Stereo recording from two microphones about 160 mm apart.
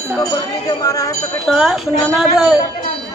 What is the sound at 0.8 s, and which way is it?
Speech, 20° left (ahead or behind).